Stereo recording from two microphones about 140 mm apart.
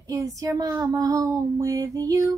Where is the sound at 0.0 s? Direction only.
25° right (ahead or behind).